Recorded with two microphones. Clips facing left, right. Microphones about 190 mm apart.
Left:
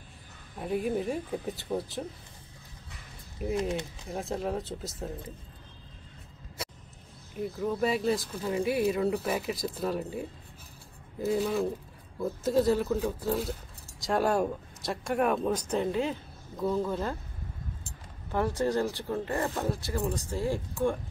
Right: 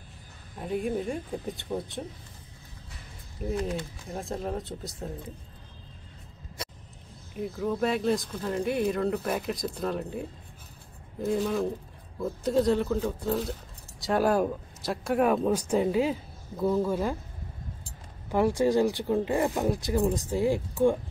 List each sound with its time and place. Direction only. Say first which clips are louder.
0.6 s speech: even; 5° left (ahead or behind)
3.4 s speech: left 1 dB; 5° left (ahead or behind)
7.3 s speech: right 1 dB; centre (ahead or behind)
18.3 s speech: right 5 dB; 15° right (ahead or behind)